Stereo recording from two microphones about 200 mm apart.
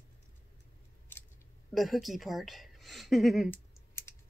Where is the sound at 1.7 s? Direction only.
Centre (ahead or behind).